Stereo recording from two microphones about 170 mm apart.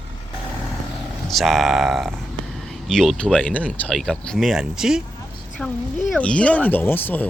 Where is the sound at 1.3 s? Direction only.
Centre (ahead or behind).